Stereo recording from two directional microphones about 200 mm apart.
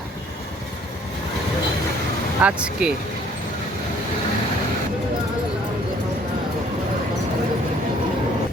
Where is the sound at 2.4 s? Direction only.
5° right (ahead or behind).